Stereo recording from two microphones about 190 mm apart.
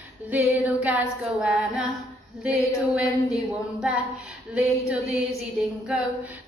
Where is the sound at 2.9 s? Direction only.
5° right (ahead or behind).